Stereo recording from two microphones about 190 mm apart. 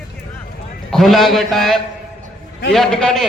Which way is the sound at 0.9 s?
Centre (ahead or behind).